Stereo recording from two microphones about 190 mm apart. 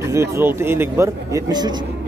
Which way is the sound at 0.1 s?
15° right (ahead or behind).